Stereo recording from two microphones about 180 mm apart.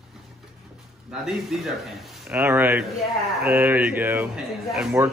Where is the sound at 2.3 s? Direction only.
15° right (ahead or behind).